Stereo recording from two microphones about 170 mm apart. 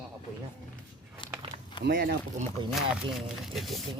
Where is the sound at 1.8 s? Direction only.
70° right (ahead or behind).